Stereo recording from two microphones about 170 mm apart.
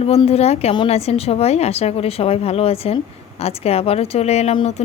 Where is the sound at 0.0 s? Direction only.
35° left (ahead or behind).